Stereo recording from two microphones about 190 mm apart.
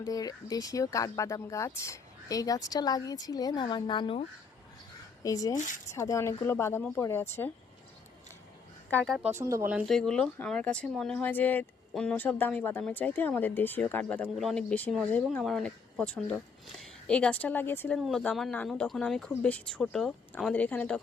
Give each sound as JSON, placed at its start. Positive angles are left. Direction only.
{"t": 0.0, "sound": "speech", "side_deg": 20}
{"t": 5.5, "sound": "speech", "side_deg": 40}
{"t": 5.9, "sound": "speech", "side_deg": 15}
{"t": 8.9, "sound": "speech", "side_deg": 5}
{"t": 9.4, "sound": "speech", "side_deg": -15}
{"t": 17.9, "sound": "speech", "side_deg": 0}